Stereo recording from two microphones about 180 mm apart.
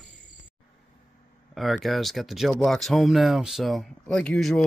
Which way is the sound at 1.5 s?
Centre (ahead or behind).